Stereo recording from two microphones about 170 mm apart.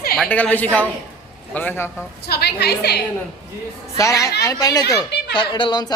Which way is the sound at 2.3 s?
70° left (ahead or behind).